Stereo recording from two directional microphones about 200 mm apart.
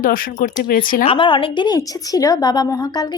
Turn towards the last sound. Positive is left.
turn(degrees=20)  # may be behind; listen again after turning